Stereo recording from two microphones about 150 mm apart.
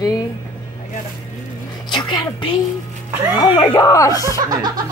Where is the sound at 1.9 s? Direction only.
30° left (ahead or behind).